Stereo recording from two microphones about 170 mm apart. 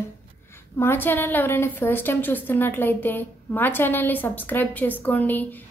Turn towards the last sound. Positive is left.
turn(degrees=10)  # may be behind; listen again after turning